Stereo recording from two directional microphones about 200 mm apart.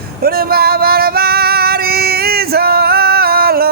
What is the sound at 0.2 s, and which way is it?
Male singing, 50° right (ahead or behind).